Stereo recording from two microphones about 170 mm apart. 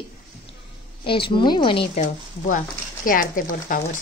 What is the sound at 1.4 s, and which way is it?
Speech, 30° left (ahead or behind).